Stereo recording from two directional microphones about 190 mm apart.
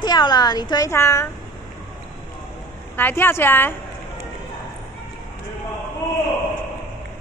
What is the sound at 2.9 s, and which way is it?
Speech, 10° left (ahead or behind).